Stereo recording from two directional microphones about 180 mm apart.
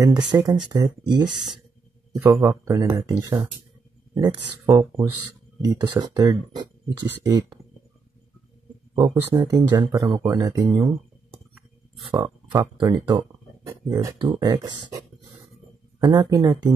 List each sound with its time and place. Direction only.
0.0 s speech: 20° right (ahead or behind)
1.2 s speech: centre (ahead or behind)
2.1 s speech: 15° right (ahead or behind)
8.9 s speech: 20° right (ahead or behind)
12.1 s speech: 20° right (ahead or behind)